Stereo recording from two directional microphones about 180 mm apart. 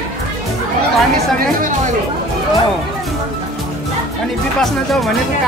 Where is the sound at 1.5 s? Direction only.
45° right (ahead or behind).